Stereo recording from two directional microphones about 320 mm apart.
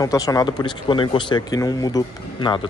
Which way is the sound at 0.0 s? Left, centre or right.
Centre.